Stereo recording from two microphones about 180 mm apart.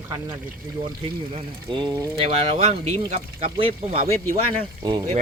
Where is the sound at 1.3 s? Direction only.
25° right (ahead or behind).